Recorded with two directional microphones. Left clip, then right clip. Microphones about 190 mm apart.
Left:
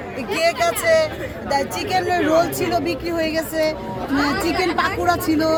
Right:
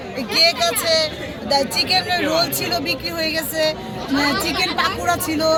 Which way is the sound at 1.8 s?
5° right (ahead or behind).